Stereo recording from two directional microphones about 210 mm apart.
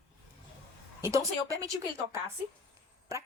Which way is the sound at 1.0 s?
15° right (ahead or behind).